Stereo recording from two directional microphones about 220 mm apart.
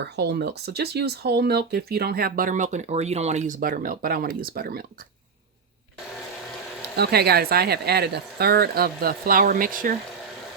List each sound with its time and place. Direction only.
0.0 s speech: 50° right (ahead or behind)
6.9 s speech: 45° right (ahead or behind)